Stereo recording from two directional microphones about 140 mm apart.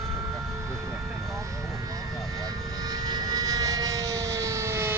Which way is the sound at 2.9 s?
30° right (ahead or behind).